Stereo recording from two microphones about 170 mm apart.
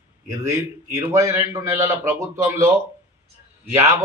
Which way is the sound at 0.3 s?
15° right (ahead or behind).